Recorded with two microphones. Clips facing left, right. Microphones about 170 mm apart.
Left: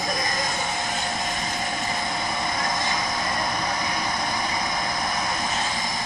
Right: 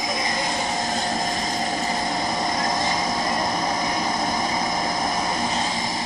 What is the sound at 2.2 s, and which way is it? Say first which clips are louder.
Vehicle: right 4 dB; 35° right (ahead or behind).